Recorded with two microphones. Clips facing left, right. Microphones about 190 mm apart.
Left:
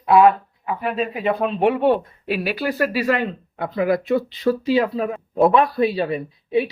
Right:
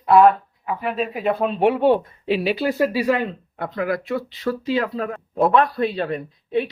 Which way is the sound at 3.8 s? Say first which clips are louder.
Left 5 dB; 15° left (ahead or behind).